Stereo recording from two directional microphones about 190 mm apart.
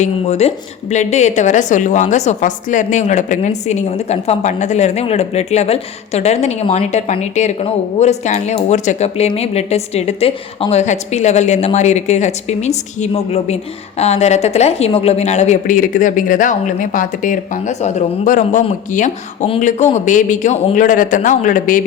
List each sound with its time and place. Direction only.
0.0 s a woman's voice: 35° left (ahead or behind)